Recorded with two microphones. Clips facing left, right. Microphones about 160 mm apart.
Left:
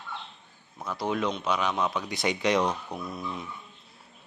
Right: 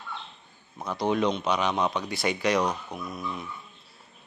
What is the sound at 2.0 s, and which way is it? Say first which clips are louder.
Speech: even; 20° left (ahead or behind).